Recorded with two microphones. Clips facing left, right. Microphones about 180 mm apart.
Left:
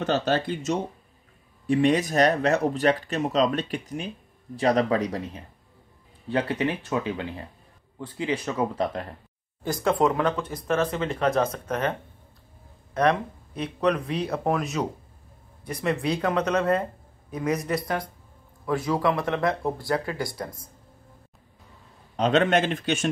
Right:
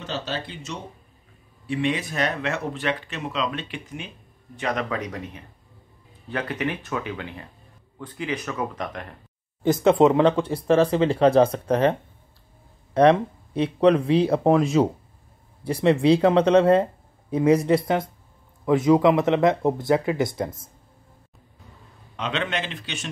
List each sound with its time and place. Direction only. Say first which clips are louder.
0.0 s speech: left 7 dB; 55° left (ahead or behind); by 9.0 s 30° left (ahead or behind)
9.6 s speech: right 6 dB; 25° right (ahead or behind)
12.9 s speech: right 6 dB; 30° right (ahead or behind)
22.1 s speech: left 7 dB; 40° left (ahead or behind)